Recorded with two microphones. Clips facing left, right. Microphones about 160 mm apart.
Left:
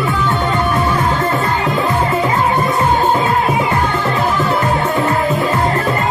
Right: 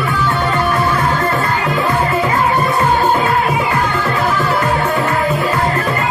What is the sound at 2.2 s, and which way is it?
Music, 25° left (ahead or behind).